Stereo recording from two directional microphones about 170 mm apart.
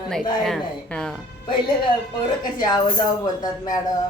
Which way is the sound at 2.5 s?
25° left (ahead or behind).